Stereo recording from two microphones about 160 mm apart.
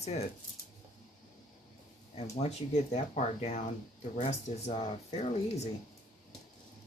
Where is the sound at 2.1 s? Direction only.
45° left (ahead or behind).